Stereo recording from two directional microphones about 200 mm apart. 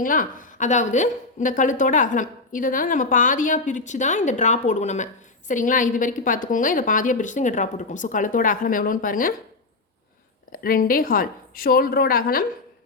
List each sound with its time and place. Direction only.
0.0 s a woman's voice: 40° left (ahead or behind)
10.5 s a woman's voice: 45° left (ahead or behind)